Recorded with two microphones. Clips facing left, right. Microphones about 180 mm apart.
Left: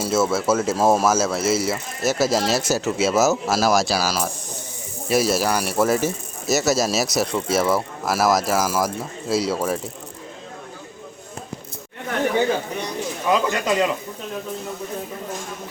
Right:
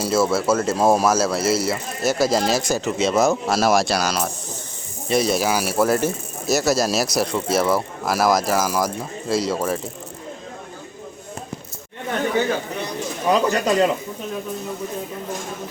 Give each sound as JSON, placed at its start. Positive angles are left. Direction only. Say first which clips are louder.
{"t": 0.0, "sound": "speech", "louder": "right 1 dB", "side_deg": 0}
{"t": 13.3, "sound": "speech", "louder": "right 2 dB", "side_deg": -40}